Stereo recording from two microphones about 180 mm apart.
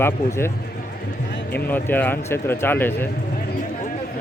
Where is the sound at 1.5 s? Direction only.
10° left (ahead or behind).